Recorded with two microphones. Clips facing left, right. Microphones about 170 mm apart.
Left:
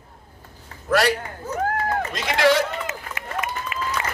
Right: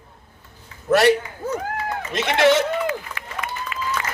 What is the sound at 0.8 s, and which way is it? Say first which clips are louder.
Speech: right 4 dB; 25° right (ahead or behind).